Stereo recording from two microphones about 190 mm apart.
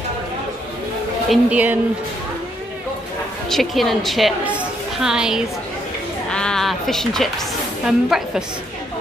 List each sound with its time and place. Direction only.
1.3 s speech: 10° right (ahead or behind)
3.4 s a woman's voice: centre (ahead or behind)